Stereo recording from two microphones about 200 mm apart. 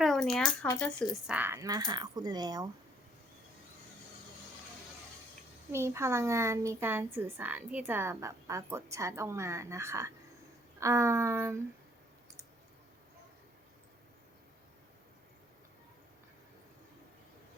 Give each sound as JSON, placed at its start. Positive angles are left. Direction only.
{"t": 0.0, "sound": "speech", "side_deg": 0}
{"t": 1.1, "sound": "speech", "side_deg": -10}
{"t": 5.7, "sound": "speech", "side_deg": -15}